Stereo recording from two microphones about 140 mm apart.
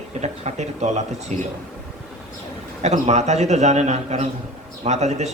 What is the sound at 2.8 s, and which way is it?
A man's voice, 55° right (ahead or behind).